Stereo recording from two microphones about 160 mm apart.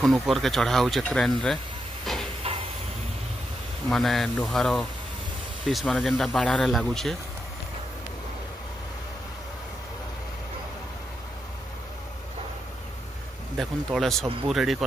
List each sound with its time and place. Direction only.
0.0 s speech: centre (ahead or behind)
2.1 s hiss: centre (ahead or behind)
2.4 s steam: 35° right (ahead or behind)
3.9 s speech: centre (ahead or behind)
13.6 s speech: centre (ahead or behind)